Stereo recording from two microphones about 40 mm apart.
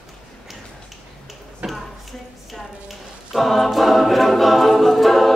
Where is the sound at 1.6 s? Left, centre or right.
Right.